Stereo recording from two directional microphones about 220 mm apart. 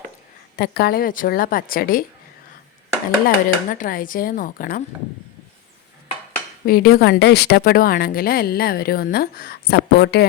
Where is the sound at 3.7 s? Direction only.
40° left (ahead or behind).